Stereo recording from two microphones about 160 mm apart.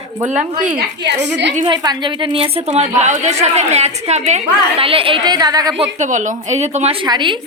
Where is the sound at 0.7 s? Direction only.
90° right.